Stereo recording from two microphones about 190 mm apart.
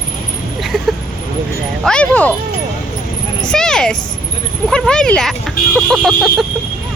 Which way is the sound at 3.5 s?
5° left (ahead or behind).